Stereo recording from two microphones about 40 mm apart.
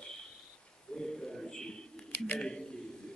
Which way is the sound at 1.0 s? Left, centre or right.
Centre.